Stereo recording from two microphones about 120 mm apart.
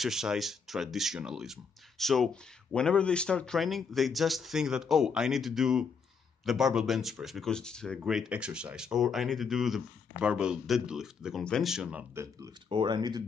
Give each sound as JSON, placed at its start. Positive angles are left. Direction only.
{"t": 0.0, "sound": "speech", "side_deg": -5}
{"t": 8.0, "sound": "speech", "side_deg": -5}
{"t": 12.6, "sound": "speech", "side_deg": -40}